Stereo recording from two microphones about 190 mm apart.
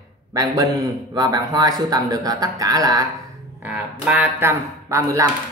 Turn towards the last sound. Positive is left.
turn(degrees=-15)  # may be behind; listen again after turning